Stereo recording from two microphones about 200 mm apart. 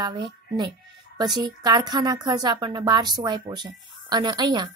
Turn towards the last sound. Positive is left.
turn(degrees=-20)  # may be behind; listen again after turning